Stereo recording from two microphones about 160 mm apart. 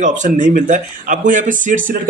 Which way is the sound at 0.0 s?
50° right (ahead or behind).